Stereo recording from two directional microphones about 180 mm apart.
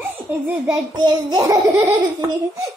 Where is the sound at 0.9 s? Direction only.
25° right (ahead or behind).